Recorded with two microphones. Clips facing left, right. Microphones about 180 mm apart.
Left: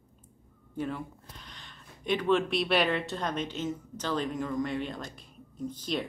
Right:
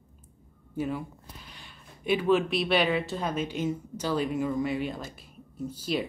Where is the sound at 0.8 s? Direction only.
5° right (ahead or behind).